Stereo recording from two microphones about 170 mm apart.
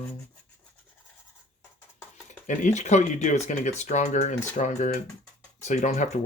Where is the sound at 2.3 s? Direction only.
45° left (ahead or behind).